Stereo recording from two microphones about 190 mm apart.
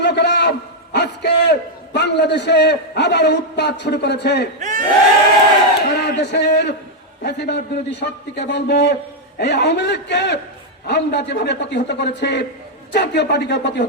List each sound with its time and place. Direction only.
0.0 s a sound: 65° left (ahead or behind)
0.9 s a man's voice: 60° left (ahead or behind)
4.6 s crowd: 45° right (ahead or behind)
5.9 s a man's voice: 60° left (ahead or behind)